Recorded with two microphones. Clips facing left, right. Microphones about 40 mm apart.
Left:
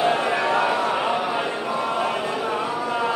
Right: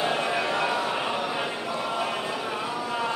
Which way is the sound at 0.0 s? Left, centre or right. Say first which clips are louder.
Left 5 dB; centre.